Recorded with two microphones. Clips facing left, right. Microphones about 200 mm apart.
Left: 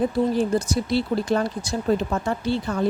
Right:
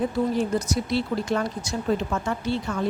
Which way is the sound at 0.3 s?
35° left (ahead or behind).